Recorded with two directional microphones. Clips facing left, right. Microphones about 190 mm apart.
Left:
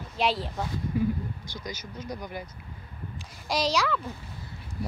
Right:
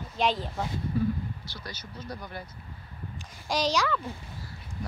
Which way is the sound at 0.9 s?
15° left (ahead or behind).